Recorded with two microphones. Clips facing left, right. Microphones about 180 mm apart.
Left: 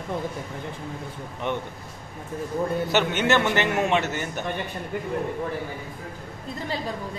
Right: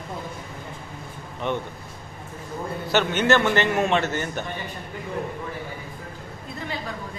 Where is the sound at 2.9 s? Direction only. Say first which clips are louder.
Right 3 dB; 15° left (ahead or behind).